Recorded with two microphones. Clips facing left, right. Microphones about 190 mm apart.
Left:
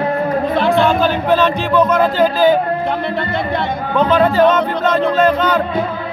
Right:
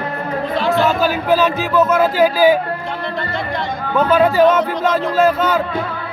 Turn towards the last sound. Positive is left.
turn(degrees=-10)  # may be behind; listen again after turning